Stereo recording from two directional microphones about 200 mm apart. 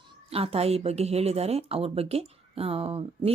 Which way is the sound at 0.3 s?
30° right (ahead or behind).